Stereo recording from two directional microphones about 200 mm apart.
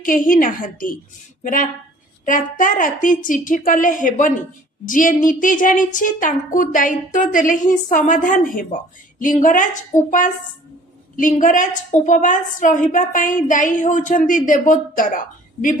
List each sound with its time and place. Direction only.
0.0 s a woman's voice: 45° left (ahead or behind)
2.2 s a woman's voice: 40° left (ahead or behind)